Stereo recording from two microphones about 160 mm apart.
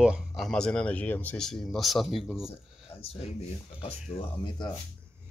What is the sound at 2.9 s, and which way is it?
Speech, 40° left (ahead or behind).